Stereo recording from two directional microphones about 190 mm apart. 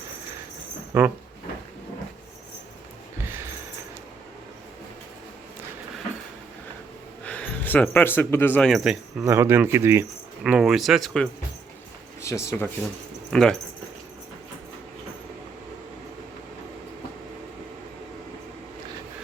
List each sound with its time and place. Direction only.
0.9 s speech: 10° right (ahead or behind)
3.2 s a sound: 15° right (ahead or behind)
7.3 s speech: 5° left (ahead or behind); by 10.1 s 15° right (ahead or behind)
10.4 s speech: 5° right (ahead or behind)
12.2 s speech: 15° left (ahead or behind)
13.3 s speech: 5° left (ahead or behind)